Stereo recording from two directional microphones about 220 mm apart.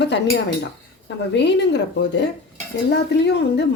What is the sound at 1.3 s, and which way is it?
A woman's voice, 50° left (ahead or behind).